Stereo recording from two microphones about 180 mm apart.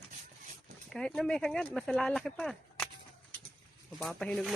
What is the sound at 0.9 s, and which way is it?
Speech, 5° left (ahead or behind).